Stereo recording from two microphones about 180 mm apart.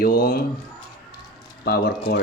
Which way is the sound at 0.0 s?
55° left (ahead or behind).